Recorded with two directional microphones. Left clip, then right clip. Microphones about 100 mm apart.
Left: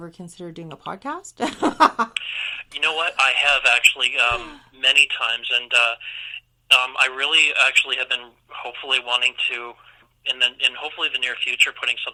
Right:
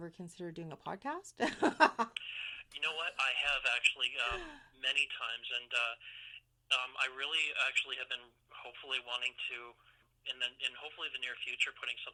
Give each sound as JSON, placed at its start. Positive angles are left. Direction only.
{"t": 0.0, "sound": "speech", "side_deg": -45}
{"t": 2.1, "sound": "speech", "side_deg": 35}
{"t": 4.4, "sound": "speech", "side_deg": -50}
{"t": 4.8, "sound": "speech", "side_deg": 35}